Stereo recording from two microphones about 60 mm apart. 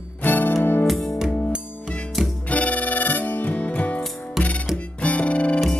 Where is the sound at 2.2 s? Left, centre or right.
Centre.